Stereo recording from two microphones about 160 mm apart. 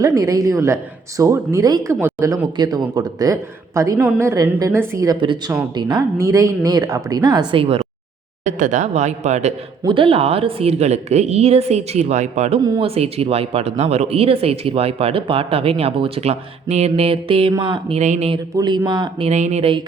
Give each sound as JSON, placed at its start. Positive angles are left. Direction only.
{"t": 0.0, "sound": "a woman's voice", "side_deg": -20}
{"t": 8.4, "sound": "speech", "side_deg": -50}
{"t": 9.8, "sound": "speech", "side_deg": -35}
{"t": 18.5, "sound": "speech", "side_deg": -25}
{"t": 19.3, "sound": "speech", "side_deg": -45}